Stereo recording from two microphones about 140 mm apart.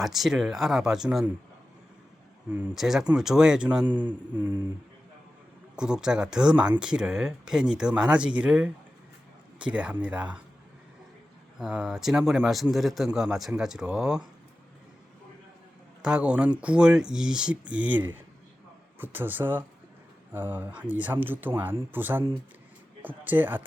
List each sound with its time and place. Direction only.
0.0 s speech: centre (ahead or behind)
2.5 s speech: 5° right (ahead or behind)
5.7 s speech: 5° right (ahead or behind)
11.6 s speech: 10° right (ahead or behind)
16.0 s speech: 10° right (ahead or behind)